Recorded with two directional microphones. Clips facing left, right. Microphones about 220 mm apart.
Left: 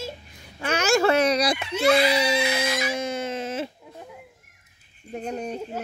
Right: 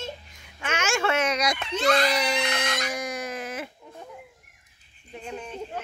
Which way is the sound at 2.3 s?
5° left (ahead or behind).